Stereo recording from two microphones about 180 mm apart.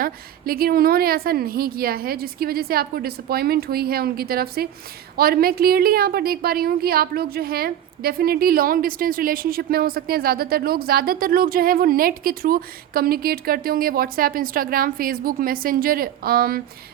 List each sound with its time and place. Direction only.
0.0 s a woman's voice: 55° right (ahead or behind)